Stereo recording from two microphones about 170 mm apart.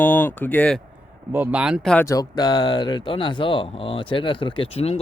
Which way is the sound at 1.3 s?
10° right (ahead or behind).